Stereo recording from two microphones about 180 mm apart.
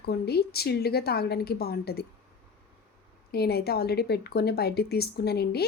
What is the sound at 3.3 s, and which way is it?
Speech, 60° left (ahead or behind).